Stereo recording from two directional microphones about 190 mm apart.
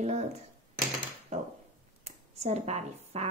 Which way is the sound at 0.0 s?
35° right (ahead or behind).